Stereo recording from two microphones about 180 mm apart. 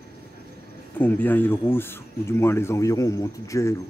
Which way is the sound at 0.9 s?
10° left (ahead or behind).